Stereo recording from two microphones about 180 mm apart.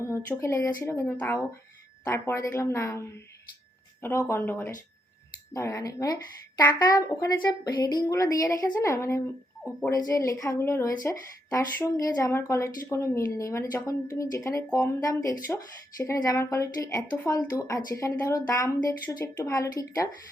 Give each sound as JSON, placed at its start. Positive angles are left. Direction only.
{"t": 0.0, "sound": "speech", "side_deg": 15}